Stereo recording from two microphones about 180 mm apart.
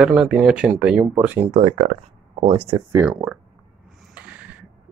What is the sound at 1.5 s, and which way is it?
Speech, 35° right (ahead or behind).